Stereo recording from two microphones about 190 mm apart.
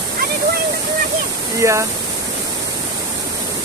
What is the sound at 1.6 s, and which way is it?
Speech, 15° right (ahead or behind).